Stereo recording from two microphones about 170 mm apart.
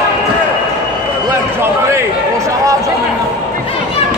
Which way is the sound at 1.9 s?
15° right (ahead or behind).